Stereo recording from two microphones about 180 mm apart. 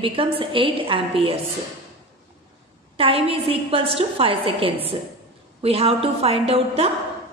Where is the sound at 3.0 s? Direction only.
30° right (ahead or behind).